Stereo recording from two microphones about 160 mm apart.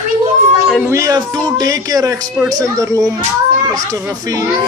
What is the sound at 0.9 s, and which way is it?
Speech, 20° right (ahead or behind).